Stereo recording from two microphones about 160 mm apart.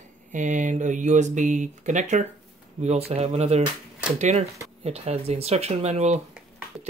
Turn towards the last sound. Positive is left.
turn(degrees=-45)  # may be behind; listen again after turning